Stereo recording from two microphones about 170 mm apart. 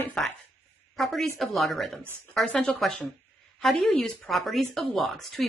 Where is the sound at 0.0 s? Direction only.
5° left (ahead or behind).